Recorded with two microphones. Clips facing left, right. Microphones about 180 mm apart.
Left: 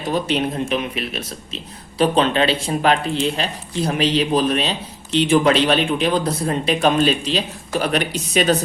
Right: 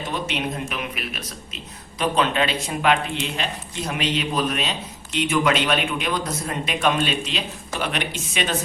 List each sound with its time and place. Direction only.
0.1 s speech: 35° left (ahead or behind)